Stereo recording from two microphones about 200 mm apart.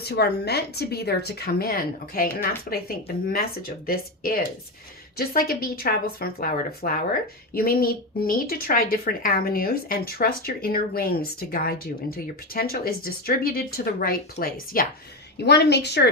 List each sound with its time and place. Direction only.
0.0 s a woman's voice: 55° left (ahead or behind)
15.4 s a woman's voice: 55° left (ahead or behind)